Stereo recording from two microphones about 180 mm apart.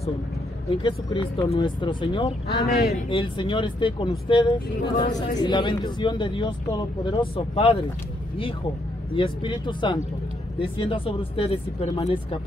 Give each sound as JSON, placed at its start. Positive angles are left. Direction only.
{"t": 0.8, "sound": "speech", "side_deg": 25}
{"t": 2.6, "sound": "speech", "side_deg": 60}
{"t": 3.1, "sound": "speech", "side_deg": 25}
{"t": 9.1, "sound": "speech", "side_deg": 30}